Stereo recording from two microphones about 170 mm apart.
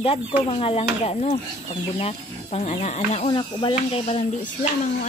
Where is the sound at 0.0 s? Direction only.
35° left (ahead or behind).